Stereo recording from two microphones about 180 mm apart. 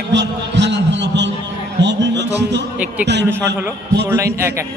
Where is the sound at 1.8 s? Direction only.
75° right (ahead or behind).